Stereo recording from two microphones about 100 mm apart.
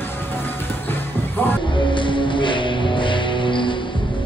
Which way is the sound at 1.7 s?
55° left (ahead or behind).